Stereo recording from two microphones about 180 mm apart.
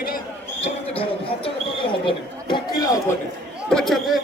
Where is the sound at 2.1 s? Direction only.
25° left (ahead or behind).